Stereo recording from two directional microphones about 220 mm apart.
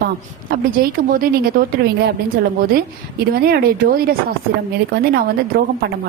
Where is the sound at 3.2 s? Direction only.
45° right (ahead or behind).